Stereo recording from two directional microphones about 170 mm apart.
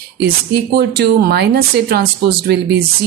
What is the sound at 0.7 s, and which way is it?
Speech, 70° right (ahead or behind).